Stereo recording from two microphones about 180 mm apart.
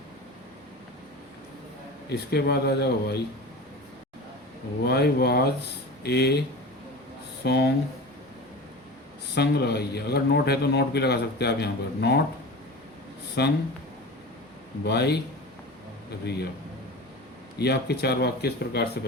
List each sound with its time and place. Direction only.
2.0 s speech: 65° left (ahead or behind)
4.9 s speech: 65° left (ahead or behind)
7.4 s speech: 65° left (ahead or behind)
9.3 s speech: 65° left (ahead or behind)
13.4 s a man's voice: 70° left (ahead or behind)
14.8 s a man's voice: 65° left (ahead or behind)
16.2 s speech: 65° left (ahead or behind)
17.6 s speech: 65° left (ahead or behind)